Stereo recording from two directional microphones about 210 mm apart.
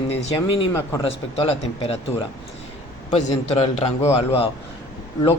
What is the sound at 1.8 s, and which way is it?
A man's voice, 30° left (ahead or behind).